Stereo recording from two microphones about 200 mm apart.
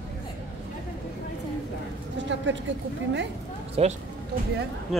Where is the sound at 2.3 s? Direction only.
65° right (ahead or behind).